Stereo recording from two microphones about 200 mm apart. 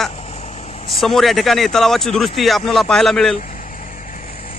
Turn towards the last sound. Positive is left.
turn(degrees=0)  # may be behind; listen again after turning